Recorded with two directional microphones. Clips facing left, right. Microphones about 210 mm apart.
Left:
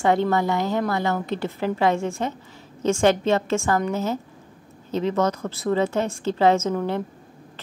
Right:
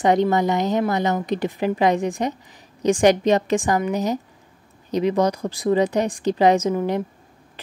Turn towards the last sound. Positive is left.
turn(degrees=-15)  # may be behind; listen again after turning